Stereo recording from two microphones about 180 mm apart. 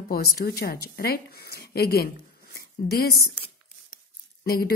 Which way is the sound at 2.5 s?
60° left (ahead or behind).